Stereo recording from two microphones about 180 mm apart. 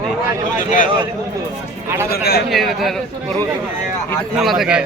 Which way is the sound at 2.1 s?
55° left (ahead or behind).